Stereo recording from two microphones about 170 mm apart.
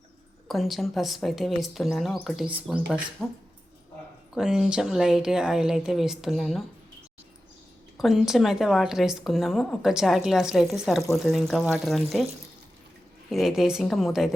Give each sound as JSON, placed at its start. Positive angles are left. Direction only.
{"t": 0.4, "sound": "speech", "side_deg": 0}
{"t": 4.4, "sound": "speech", "side_deg": -5}
{"t": 7.9, "sound": "speech", "side_deg": 0}
{"t": 13.3, "sound": "speech", "side_deg": 0}